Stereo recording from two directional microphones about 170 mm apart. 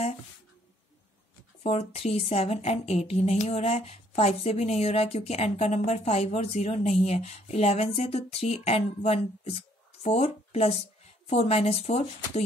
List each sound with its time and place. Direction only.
1.6 s speech: 35° left (ahead or behind)